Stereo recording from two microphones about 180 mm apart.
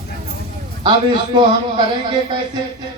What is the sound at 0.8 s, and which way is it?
Speech, 25° right (ahead or behind).